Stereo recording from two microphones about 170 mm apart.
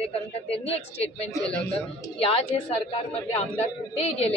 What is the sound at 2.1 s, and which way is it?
A woman's voice, 35° left (ahead or behind).